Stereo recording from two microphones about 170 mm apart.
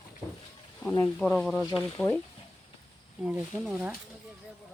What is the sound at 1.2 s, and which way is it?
Speech, 5° left (ahead or behind).